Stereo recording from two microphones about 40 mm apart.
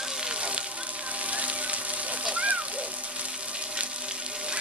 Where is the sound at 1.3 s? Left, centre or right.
Right.